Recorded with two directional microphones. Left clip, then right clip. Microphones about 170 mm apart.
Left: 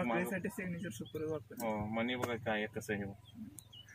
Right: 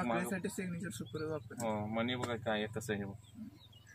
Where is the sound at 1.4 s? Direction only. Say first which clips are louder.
Right 1 dB; 5° right (ahead or behind).